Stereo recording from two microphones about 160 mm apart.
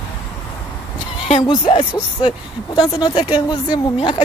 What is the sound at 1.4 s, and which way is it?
Speech, 30° left (ahead or behind).